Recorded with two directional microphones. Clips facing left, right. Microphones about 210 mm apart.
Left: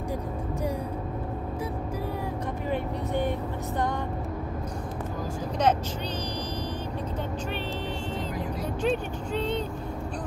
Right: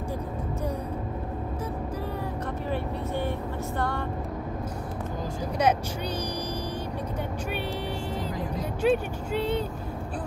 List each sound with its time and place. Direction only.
2.7 s vehicle: 15° left (ahead or behind)
8.8 s vehicle: 10° right (ahead or behind)